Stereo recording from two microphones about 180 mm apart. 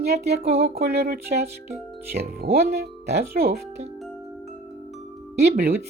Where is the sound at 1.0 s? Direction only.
60° right (ahead or behind).